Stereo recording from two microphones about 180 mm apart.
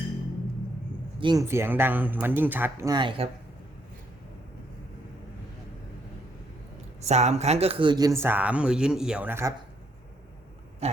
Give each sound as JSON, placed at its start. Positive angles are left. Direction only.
{"t": 1.2, "sound": "speech", "side_deg": -20}
{"t": 7.0, "sound": "speech", "side_deg": -40}
{"t": 10.8, "sound": "oink", "side_deg": -35}